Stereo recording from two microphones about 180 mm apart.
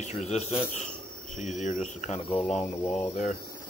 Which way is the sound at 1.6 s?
40° left (ahead or behind).